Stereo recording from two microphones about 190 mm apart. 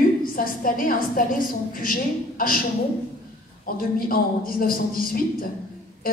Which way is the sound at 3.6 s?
50° left (ahead or behind).